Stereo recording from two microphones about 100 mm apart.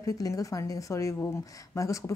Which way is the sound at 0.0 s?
35° left (ahead or behind).